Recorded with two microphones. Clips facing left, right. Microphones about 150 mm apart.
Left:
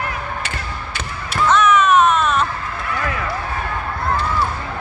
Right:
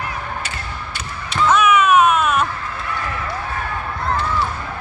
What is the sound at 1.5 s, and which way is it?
Music, 5° right (ahead or behind).